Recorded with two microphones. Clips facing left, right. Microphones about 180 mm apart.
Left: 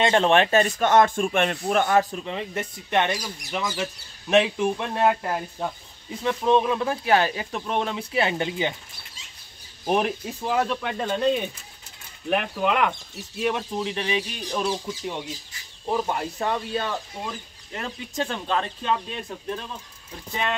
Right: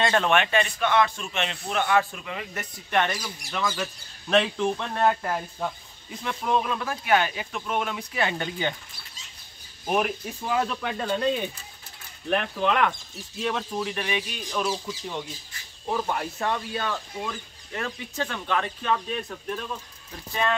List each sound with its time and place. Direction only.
0.0 s speech: 25° left (ahead or behind)
9.8 s speech: 30° left (ahead or behind)
10.5 s speech: centre (ahead or behind); by 14.7 s 30° left (ahead or behind)
15.9 s speech: 20° left (ahead or behind)
17.7 s speech: 25° left (ahead or behind)